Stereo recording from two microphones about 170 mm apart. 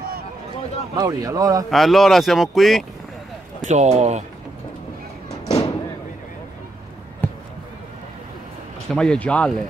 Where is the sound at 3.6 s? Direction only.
40° right (ahead or behind).